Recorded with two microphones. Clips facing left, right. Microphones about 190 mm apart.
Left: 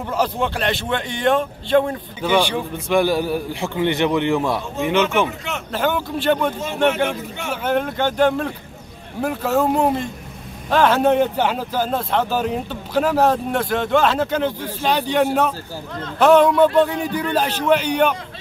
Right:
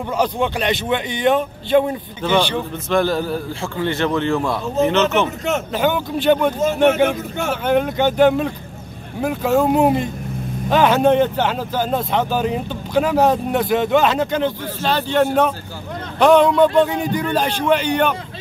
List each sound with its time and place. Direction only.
0.2 s speech: centre (ahead or behind)
2.2 s a man's voice: 10° left (ahead or behind)
5.7 s speech: centre (ahead or behind)
6.6 s speech: 45° right (ahead or behind)
7.6 s a man's voice: centre (ahead or behind); by 15.2 s 15° left (ahead or behind)
16.2 s a man's voice: 5° left (ahead or behind)